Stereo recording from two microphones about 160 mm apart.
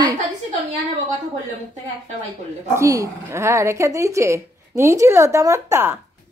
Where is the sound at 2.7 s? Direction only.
20° right (ahead or behind).